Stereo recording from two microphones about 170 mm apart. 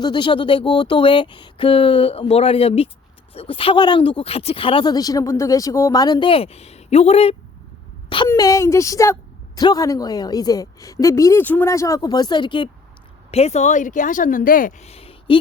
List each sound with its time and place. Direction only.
0.0 s a woman's voice: 25° left (ahead or behind)
8.3 s a woman's voice: 20° left (ahead or behind)
13.3 s speech: 40° left (ahead or behind)